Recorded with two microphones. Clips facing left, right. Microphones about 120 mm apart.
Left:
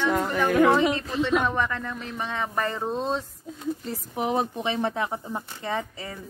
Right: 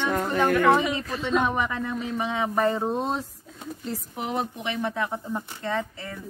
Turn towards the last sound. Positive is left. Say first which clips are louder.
# right 1 dB
turn(degrees=15)  # may be behind; listen again after turning